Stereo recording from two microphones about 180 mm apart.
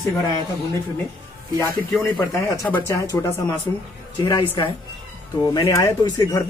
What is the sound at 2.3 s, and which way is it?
Speech, 15° left (ahead or behind).